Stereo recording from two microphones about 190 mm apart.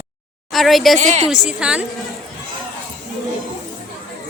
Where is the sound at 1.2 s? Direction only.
5° right (ahead or behind).